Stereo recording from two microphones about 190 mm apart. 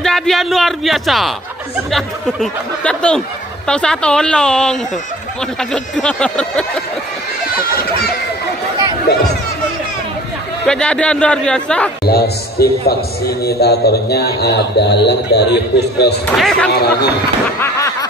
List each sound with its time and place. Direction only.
0.0 s speech: centre (ahead or behind)
10.7 s speech: 5° left (ahead or behind)
12.0 s a man's voice: 55° left (ahead or behind)
16.3 s speech: centre (ahead or behind)
16.7 s a man's voice: 55° left (ahead or behind)
17.6 s a sound: 15° left (ahead or behind)